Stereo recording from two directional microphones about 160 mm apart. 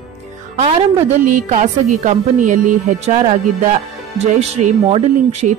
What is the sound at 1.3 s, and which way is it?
A woman's voice, 50° right (ahead or behind).